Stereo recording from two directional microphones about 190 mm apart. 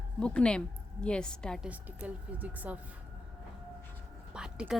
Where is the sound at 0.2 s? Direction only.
5° left (ahead or behind).